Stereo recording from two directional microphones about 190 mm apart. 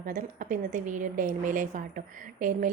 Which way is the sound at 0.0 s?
45° right (ahead or behind).